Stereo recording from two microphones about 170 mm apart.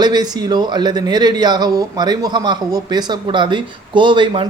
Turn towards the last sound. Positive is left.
turn(degrees=-30)  # may be behind; listen again after turning